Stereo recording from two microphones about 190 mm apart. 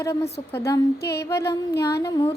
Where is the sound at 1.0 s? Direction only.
60° left (ahead or behind).